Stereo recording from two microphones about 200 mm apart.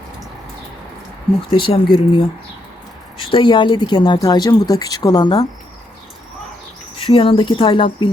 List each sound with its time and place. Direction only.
1.5 s speech: 25° left (ahead or behind)
7.0 s speech: 25° left (ahead or behind)